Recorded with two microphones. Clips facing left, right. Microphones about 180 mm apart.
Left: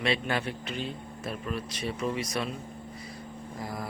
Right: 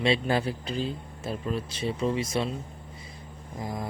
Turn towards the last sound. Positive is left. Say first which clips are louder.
# right 2 dB
turn(degrees=-20)  # may be behind; listen again after turning